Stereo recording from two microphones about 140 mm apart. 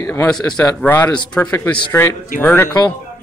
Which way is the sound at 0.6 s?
15° left (ahead or behind).